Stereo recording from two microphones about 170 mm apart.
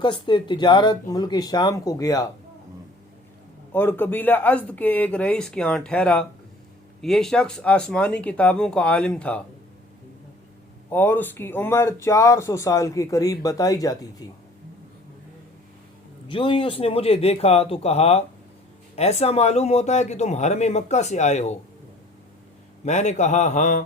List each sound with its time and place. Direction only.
0.0 s speech: 30° left (ahead or behind)
3.7 s speech: 10° left (ahead or behind)
10.9 s speech: 10° left (ahead or behind)
16.3 s speech: 30° left (ahead or behind)
22.9 s speech: 40° left (ahead or behind)